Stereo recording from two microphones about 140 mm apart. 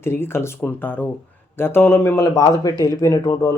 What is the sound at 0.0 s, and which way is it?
Speech, 15° left (ahead or behind).